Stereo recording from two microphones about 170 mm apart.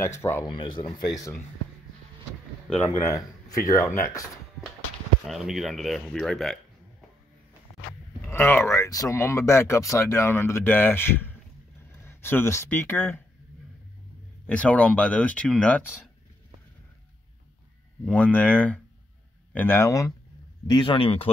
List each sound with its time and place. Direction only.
0.0 s speech: 15° left (ahead or behind)
0.5 s speech: 30° left (ahead or behind)
2.7 s speech: 10° left (ahead or behind)
5.2 s speech: centre (ahead or behind)
8.3 s speech: 15° left (ahead or behind)
14.4 s speech: 10° left (ahead or behind)
18.0 s speech: 5° left (ahead or behind); by 21.3 s 30° left (ahead or behind)